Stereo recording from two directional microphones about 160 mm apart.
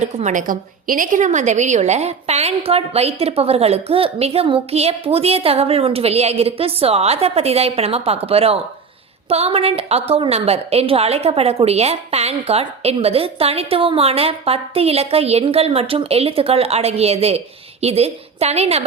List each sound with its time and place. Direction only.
0.0 s a woman's voice: 45° right (ahead or behind)